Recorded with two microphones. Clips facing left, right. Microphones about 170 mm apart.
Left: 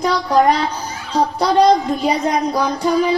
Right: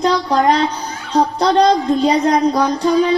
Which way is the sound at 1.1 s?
10° left (ahead or behind).